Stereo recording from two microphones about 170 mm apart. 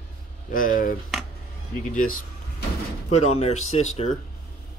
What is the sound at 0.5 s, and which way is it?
Speech, 55° left (ahead or behind).